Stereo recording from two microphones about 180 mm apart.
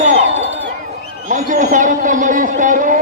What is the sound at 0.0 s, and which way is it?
Crowd, 40° right (ahead or behind).